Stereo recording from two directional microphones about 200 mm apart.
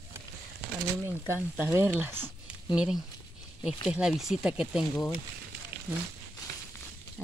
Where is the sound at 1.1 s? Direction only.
10° right (ahead or behind).